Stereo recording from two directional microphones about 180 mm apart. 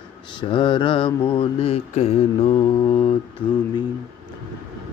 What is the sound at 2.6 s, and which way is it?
Mantra, 20° left (ahead or behind).